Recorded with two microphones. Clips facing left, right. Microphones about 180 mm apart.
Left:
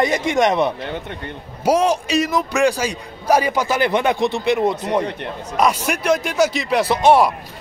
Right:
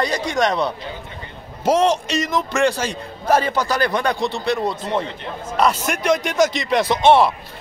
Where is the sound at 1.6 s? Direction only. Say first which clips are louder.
Even; 10° left (ahead or behind).